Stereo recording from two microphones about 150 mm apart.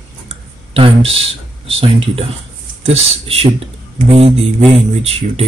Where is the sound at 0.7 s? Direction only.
40° right (ahead or behind).